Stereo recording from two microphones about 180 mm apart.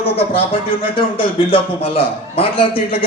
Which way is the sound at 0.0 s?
30° left (ahead or behind).